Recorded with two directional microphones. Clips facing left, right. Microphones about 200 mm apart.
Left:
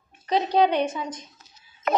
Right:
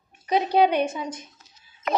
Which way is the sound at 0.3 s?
10° right (ahead or behind).